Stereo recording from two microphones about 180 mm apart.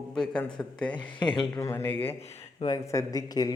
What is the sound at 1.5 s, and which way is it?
Speech, 15° left (ahead or behind).